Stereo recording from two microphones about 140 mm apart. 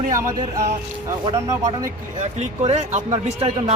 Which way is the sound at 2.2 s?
55° right (ahead or behind).